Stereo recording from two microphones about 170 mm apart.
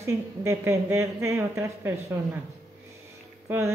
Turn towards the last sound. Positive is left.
turn(degrees=-15)  # may be behind; listen again after turning